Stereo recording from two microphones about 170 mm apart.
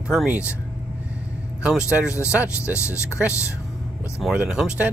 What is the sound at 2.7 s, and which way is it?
Speech, 15° left (ahead or behind).